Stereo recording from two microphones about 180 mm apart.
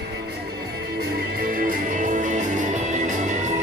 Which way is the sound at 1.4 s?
50° right (ahead or behind).